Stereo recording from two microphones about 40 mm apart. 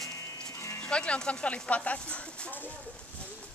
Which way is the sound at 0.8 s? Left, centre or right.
Left.